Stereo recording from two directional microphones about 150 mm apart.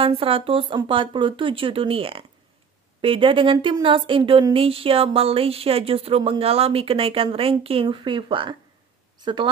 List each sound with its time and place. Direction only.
0.0 s speech: 40° right (ahead or behind)